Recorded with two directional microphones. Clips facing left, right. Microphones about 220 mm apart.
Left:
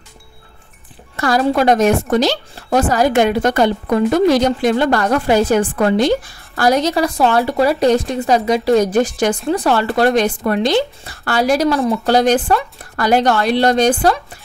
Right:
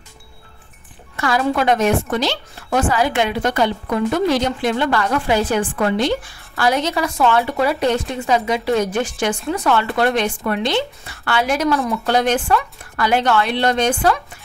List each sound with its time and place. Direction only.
1.1 s a woman's voice: 40° left (ahead or behind)